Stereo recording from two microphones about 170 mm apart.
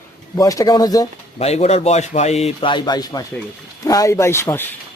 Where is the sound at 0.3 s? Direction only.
20° left (ahead or behind).